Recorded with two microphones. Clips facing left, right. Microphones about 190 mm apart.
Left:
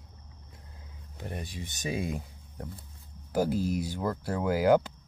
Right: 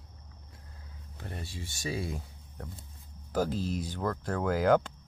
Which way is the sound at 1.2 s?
15° left (ahead or behind).